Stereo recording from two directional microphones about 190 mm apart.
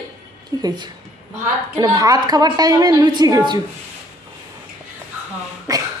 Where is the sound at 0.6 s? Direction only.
20° right (ahead or behind).